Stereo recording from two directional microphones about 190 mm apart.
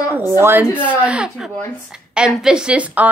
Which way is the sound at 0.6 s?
10° left (ahead or behind).